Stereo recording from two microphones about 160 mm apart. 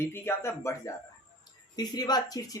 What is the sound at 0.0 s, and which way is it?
A woman's voice, 15° left (ahead or behind).